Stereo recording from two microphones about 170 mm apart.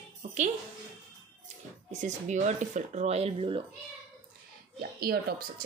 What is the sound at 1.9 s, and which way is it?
Speech, 45° right (ahead or behind).